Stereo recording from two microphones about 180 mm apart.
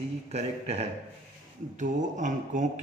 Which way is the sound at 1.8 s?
45° right (ahead or behind).